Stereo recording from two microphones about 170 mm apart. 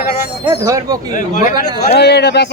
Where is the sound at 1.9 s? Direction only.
75° left (ahead or behind).